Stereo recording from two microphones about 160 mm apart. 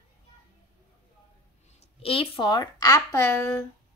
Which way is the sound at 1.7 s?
40° left (ahead or behind).